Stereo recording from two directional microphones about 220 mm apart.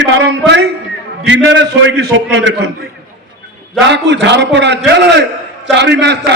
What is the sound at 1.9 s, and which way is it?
Speech, 55° right (ahead or behind).